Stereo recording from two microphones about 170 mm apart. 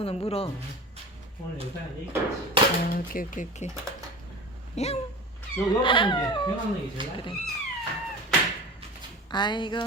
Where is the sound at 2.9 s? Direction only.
55° left (ahead or behind).